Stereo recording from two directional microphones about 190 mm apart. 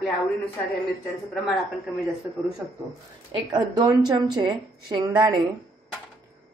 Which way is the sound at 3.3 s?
25° right (ahead or behind).